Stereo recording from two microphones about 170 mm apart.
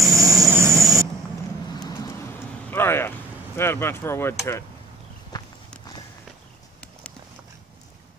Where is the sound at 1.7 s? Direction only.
25° left (ahead or behind).